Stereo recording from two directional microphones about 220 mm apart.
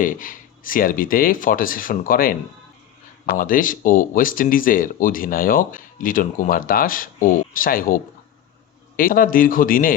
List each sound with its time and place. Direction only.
0.0 s speech: 40° left (ahead or behind)
9.0 s speech: 40° left (ahead or behind)